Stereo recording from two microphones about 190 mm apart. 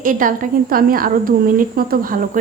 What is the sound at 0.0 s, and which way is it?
A woman's voice, 45° right (ahead or behind).